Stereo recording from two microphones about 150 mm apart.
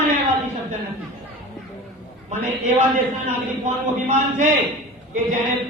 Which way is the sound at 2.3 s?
50° right (ahead or behind).